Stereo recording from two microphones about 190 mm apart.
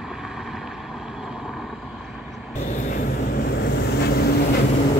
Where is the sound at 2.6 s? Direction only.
40° left (ahead or behind).